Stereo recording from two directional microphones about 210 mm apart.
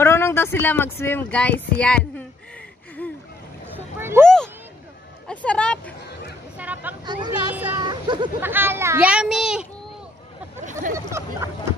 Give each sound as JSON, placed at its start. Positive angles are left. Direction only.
{"t": 0.0, "sound": "speech", "side_deg": 10}
{"t": 3.0, "sound": "splash", "side_deg": 10}
{"t": 3.7, "sound": "boat", "side_deg": -10}
{"t": 4.2, "sound": "a sound", "side_deg": 5}
{"t": 5.3, "sound": "speech", "side_deg": 5}
{"t": 6.6, "sound": "vehicle", "side_deg": -10}
{"t": 7.1, "sound": "speech", "side_deg": -20}
{"t": 7.5, "sound": "speech", "side_deg": -5}
{"t": 7.9, "sound": "speech", "side_deg": -20}
{"t": 8.4, "sound": "speech", "side_deg": -10}
{"t": 10.6, "sound": "speech", "side_deg": -35}
{"t": 11.1, "sound": "speech", "side_deg": -15}